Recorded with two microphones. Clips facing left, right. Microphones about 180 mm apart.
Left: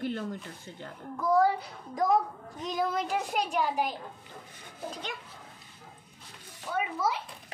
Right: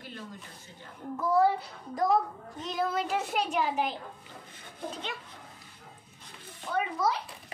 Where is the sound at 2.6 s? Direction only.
5° right (ahead or behind).